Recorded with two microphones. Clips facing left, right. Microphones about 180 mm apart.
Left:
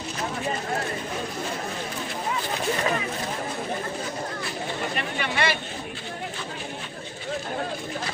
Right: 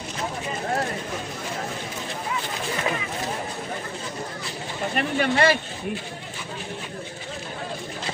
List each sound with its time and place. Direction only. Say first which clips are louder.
4.9 s speech: right 9 dB; 45° right (ahead or behind)